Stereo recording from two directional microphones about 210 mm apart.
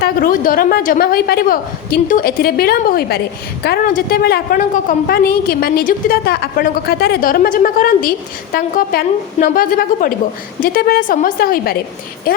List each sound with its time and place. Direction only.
0.0 s a woman's voice: 40° left (ahead or behind)